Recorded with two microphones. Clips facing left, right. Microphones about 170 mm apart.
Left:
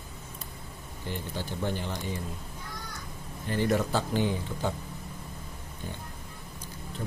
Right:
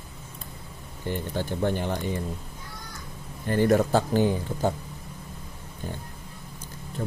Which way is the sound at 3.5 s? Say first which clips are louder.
Right 6 dB; 50° right (ahead or behind).